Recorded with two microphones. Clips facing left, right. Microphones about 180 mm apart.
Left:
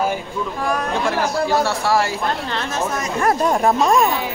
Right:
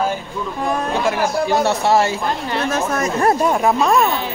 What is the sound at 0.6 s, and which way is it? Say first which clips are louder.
A man's voice: right 2 dB; 20° right (ahead or behind).